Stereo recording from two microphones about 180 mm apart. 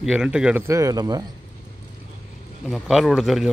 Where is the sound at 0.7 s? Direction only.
20° right (ahead or behind).